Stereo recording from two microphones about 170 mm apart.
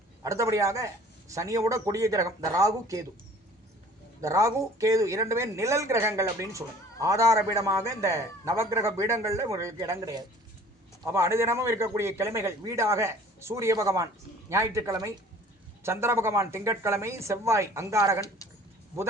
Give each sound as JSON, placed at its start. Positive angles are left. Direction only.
{"t": 0.2, "sound": "speech", "side_deg": -20}
{"t": 4.2, "sound": "a woman's voice", "side_deg": -20}